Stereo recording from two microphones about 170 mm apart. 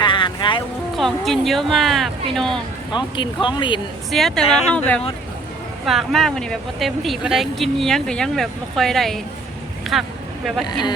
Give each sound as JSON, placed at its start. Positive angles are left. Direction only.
{"t": 0.0, "sound": "boat", "side_deg": 30}
{"t": 0.9, "sound": "speech", "side_deg": 0}
{"t": 2.9, "sound": "speech", "side_deg": 30}
{"t": 4.1, "sound": "speech", "side_deg": 0}
{"t": 10.7, "sound": "speech", "side_deg": 25}